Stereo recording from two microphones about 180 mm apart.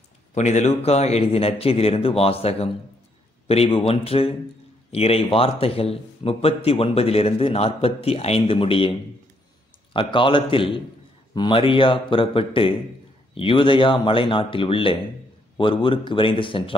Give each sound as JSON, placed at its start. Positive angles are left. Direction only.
{"t": 0.3, "sound": "speech", "side_deg": 40}
{"t": 9.9, "sound": "speech", "side_deg": 30}